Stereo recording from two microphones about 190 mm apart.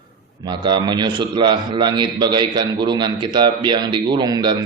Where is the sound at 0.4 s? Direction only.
25° right (ahead or behind).